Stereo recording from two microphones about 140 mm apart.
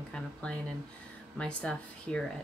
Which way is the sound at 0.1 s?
5° left (ahead or behind).